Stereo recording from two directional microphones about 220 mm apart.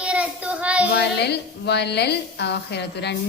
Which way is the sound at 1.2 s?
50° left (ahead or behind).